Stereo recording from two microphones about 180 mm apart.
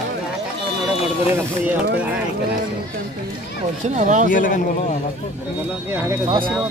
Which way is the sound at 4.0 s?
45° right (ahead or behind).